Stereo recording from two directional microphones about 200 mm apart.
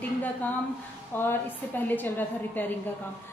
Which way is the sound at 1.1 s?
10° left (ahead or behind).